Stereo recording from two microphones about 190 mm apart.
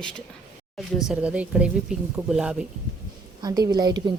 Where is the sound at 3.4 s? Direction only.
20° right (ahead or behind).